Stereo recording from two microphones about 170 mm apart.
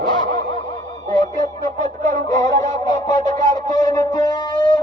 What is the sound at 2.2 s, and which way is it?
Music, 20° left (ahead or behind).